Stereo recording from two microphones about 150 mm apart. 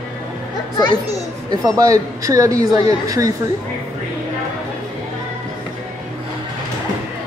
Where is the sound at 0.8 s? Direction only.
25° left (ahead or behind).